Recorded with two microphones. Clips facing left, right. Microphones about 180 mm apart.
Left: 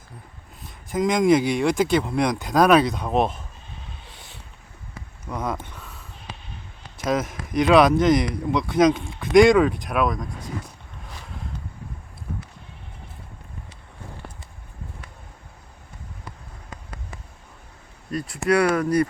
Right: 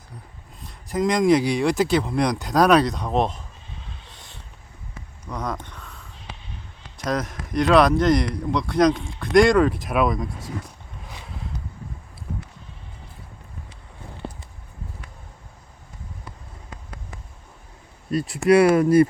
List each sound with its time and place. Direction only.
0.6 s speech: centre (ahead or behind)
4.1 s boat: 5° left (ahead or behind)
5.3 s speech: 5° left (ahead or behind)
14.2 s a sound: 25° right (ahead or behind)
18.1 s speech: 25° right (ahead or behind)